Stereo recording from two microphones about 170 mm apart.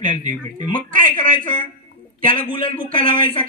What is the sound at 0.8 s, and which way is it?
Speech, 50° right (ahead or behind).